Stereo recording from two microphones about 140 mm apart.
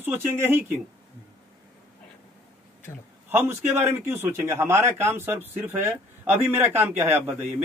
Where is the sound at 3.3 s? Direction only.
15° right (ahead or behind).